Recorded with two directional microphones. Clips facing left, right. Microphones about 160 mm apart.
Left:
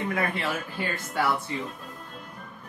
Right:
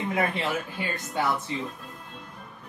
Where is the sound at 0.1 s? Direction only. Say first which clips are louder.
Right 1 dB; 20° right (ahead or behind).